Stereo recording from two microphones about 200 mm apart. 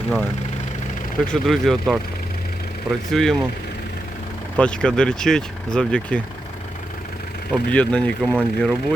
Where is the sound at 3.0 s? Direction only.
Centre (ahead or behind).